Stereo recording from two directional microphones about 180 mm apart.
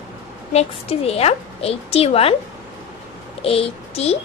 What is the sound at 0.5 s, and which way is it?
A woman's voice, 35° left (ahead or behind).